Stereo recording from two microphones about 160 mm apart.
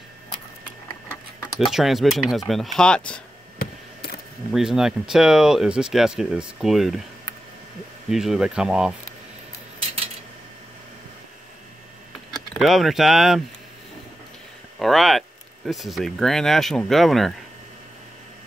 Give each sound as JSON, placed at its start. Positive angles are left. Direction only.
{"t": 1.6, "sound": "speech", "side_deg": 0}
{"t": 3.5, "sound": "a sound", "side_deg": 75}
{"t": 4.5, "sound": "speech", "side_deg": -5}
{"t": 8.1, "sound": "speech", "side_deg": -5}
{"t": 12.5, "sound": "speech", "side_deg": 0}
{"t": 14.8, "sound": "speech", "side_deg": 0}